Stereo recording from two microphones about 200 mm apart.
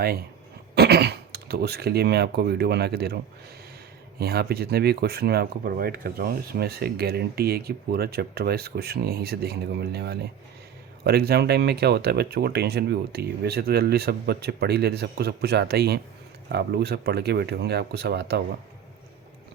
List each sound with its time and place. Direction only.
0.8 s speech: 55° right (ahead or behind)
4.2 s speech: 50° right (ahead or behind)